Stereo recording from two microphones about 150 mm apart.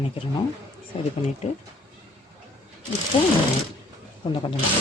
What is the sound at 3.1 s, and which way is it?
Speech, 40° left (ahead or behind).